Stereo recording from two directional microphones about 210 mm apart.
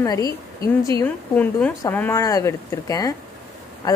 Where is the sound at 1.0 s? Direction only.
5° left (ahead or behind).